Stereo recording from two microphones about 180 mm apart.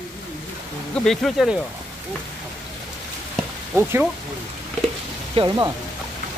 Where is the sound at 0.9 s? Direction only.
Centre (ahead or behind).